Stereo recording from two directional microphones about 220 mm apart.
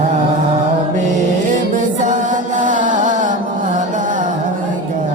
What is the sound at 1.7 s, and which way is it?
Music, 35° right (ahead or behind).